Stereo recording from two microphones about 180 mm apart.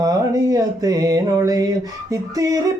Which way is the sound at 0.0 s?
20° right (ahead or behind).